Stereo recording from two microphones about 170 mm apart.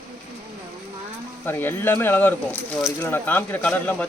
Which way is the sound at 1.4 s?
10° left (ahead or behind).